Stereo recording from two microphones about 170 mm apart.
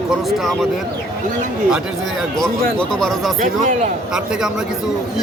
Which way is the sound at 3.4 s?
50° right (ahead or behind).